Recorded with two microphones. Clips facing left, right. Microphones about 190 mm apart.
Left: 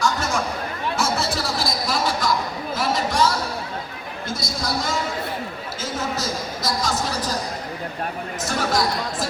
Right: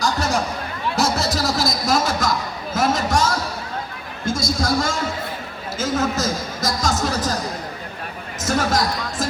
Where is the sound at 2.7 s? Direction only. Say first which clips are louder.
Right 3 dB; 45° right (ahead or behind).